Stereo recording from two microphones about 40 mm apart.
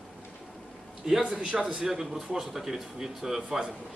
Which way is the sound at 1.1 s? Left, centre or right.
Centre.